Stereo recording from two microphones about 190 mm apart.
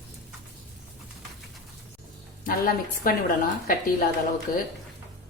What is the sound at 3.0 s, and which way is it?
Speech, 50° left (ahead or behind).